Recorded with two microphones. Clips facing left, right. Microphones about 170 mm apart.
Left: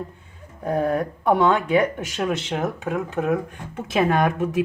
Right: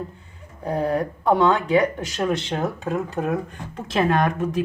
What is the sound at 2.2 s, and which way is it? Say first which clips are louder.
Speech: right 1 dB; 5° left (ahead or behind).